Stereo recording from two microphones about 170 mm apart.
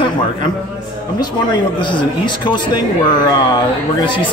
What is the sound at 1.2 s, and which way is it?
Speech, 25° left (ahead or behind).